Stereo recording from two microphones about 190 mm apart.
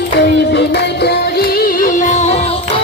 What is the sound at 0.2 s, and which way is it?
Music, 65° left (ahead or behind).